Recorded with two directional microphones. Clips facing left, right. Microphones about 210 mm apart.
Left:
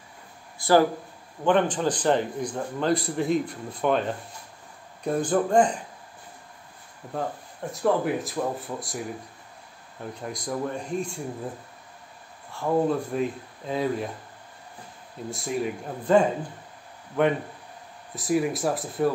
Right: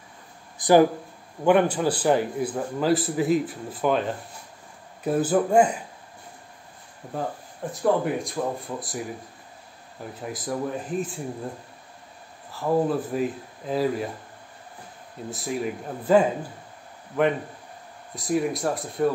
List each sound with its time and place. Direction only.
0.6 s a man's voice: 15° right (ahead or behind)
7.7 s speech: centre (ahead or behind)
10.2 s speech: 5° right (ahead or behind)
12.4 s speech: 5° right (ahead or behind)
15.2 s speech: centre (ahead or behind)